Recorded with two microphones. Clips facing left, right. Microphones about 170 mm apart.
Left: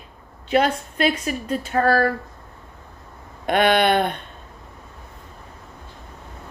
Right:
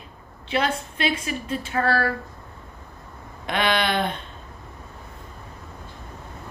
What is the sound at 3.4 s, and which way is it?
Speech, 50° left (ahead or behind).